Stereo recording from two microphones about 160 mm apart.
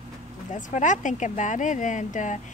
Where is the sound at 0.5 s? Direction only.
50° left (ahead or behind).